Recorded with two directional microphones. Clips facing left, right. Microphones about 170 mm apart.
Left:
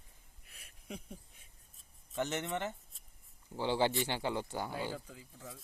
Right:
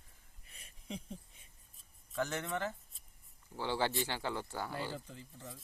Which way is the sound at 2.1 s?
20° left (ahead or behind).